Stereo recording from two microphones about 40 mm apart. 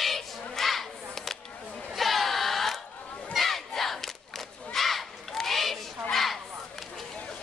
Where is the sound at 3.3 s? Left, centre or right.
Centre.